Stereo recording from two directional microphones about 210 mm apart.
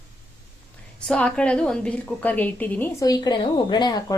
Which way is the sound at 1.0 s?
5° left (ahead or behind).